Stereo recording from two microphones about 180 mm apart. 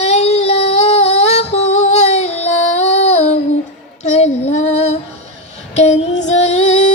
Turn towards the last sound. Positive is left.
turn(degrees=40)  # may be behind; listen again after turning